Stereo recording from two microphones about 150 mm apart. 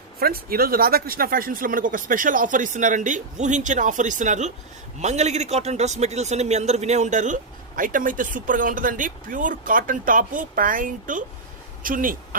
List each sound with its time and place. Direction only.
0.2 s a man's voice: 85° right; by 12.4 s 65° right (ahead or behind)